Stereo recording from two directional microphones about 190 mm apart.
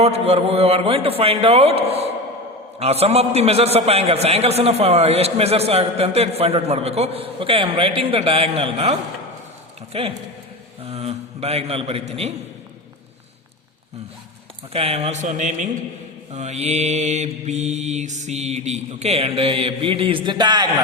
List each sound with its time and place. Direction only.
0.0 s a man's voice: 35° right (ahead or behind)
14.7 s a man's voice: 30° right (ahead or behind)